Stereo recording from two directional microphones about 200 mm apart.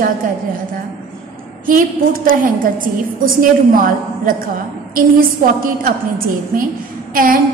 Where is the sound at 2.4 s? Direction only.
45° right (ahead or behind).